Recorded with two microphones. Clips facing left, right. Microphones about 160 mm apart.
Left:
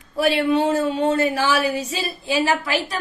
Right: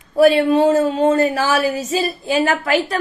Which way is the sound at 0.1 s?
45° right (ahead or behind).